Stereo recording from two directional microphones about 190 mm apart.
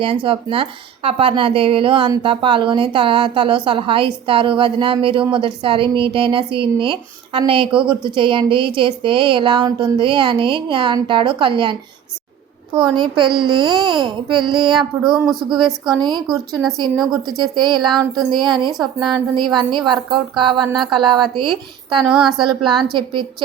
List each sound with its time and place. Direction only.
0.0 s speech: 30° right (ahead or behind)
14.8 s a woman's voice: 5° right (ahead or behind)
16.0 s speech: 20° right (ahead or behind)
16.3 s a woman's voice: centre (ahead or behind)
17.5 s speech: 25° right (ahead or behind)
21.9 s a woman's voice: centre (ahead or behind)